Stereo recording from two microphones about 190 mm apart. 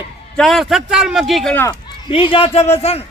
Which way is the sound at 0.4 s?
Centre (ahead or behind).